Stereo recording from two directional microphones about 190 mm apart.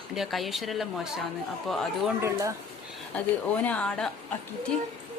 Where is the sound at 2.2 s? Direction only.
15° right (ahead or behind).